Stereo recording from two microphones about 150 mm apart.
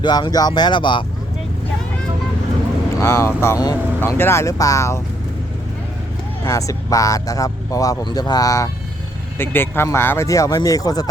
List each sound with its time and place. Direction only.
0.0 s speech: 30° left (ahead or behind)
3.0 s speech: 15° left (ahead or behind)
6.4 s speech: 20° left (ahead or behind)